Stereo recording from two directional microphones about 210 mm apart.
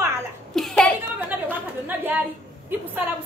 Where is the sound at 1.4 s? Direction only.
10° right (ahead or behind).